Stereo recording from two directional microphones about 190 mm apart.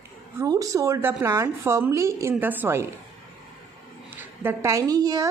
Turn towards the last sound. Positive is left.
turn(degrees=-20)  # may be behind; listen again after turning